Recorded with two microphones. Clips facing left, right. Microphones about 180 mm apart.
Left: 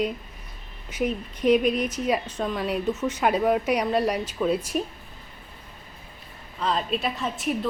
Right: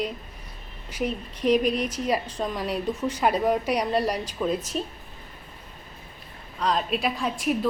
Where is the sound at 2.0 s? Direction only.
10° left (ahead or behind).